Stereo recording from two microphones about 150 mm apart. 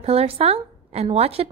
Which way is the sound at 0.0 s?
40° right (ahead or behind).